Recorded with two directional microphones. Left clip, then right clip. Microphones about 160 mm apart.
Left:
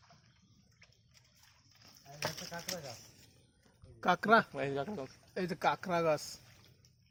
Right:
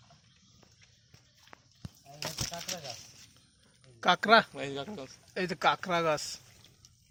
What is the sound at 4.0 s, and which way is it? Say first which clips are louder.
Speech: right 5 dB; 5° right (ahead or behind).